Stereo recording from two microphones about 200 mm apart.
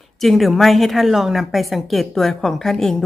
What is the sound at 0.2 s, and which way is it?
A woman's voice, centre (ahead or behind).